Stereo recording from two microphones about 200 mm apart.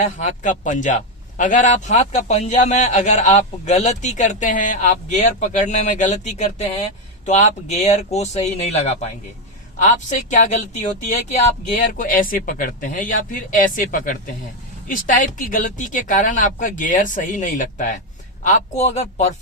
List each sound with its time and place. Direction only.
0.0 s a man's voice: 35° left (ahead or behind)